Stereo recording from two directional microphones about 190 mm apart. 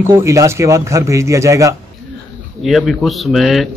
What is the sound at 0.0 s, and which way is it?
Speech, 15° right (ahead or behind).